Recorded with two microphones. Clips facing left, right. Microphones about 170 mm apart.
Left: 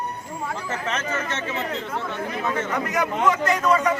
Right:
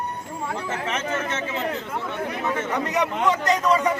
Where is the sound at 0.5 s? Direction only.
15° right (ahead or behind).